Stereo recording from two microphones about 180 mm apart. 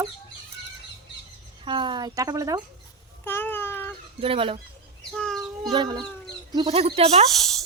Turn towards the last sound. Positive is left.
turn(degrees=0)  # may be behind; listen again after turning